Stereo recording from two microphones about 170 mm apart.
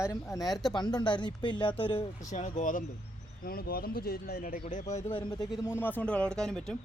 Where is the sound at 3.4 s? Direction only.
60° left (ahead or behind); by 5.3 s 30° left (ahead or behind).